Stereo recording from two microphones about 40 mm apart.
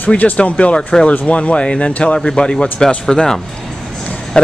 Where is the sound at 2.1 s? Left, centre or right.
Centre.